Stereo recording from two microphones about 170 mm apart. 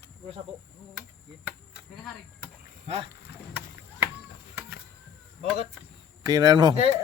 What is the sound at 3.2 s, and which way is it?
Rowboat, 65° left (ahead or behind).